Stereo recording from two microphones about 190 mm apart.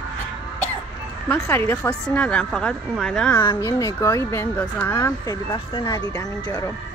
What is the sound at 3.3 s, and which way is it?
Speech, 15° left (ahead or behind).